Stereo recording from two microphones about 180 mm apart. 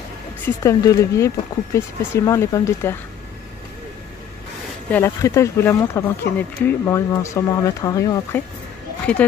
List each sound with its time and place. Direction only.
0.7 s speech: 15° left (ahead or behind)
4.9 s speech: 15° left (ahead or behind)
9.1 s speech: 10° left (ahead or behind)